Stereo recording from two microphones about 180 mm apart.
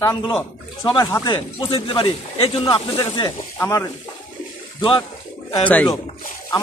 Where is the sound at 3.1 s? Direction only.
20° left (ahead or behind).